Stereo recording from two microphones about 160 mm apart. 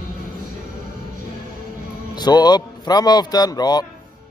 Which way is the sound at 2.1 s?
25° left (ahead or behind).